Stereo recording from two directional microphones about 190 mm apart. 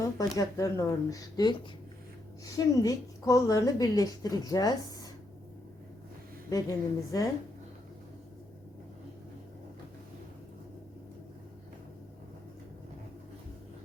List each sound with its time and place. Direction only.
0.0 s a woman's voice: 15° left (ahead or behind)
6.5 s speech: 20° left (ahead or behind)